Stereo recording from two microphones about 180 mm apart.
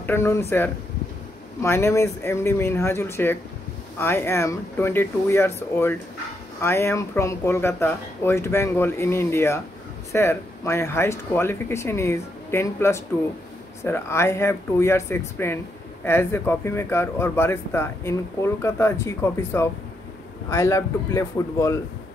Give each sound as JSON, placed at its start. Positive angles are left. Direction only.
{"t": 0.0, "sound": "speech", "side_deg": 15}
{"t": 6.6, "sound": "speech", "side_deg": 15}